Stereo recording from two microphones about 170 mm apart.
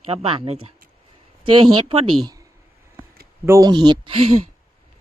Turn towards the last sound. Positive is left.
turn(degrees=-30)  # may be behind; listen again after turning